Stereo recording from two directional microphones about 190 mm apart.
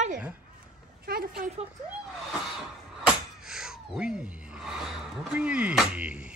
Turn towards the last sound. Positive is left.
turn(degrees=-5)  # may be behind; listen again after turning